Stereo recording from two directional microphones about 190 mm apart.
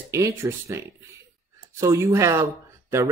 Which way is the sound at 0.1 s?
15° right (ahead or behind).